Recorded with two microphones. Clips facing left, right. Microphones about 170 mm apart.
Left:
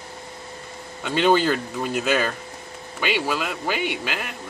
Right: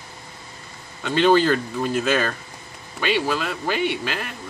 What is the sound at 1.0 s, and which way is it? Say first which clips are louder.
Speech: right 2 dB; 10° left (ahead or behind).